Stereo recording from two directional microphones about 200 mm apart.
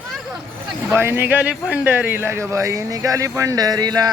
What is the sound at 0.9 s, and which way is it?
A man's voice, 10° right (ahead or behind).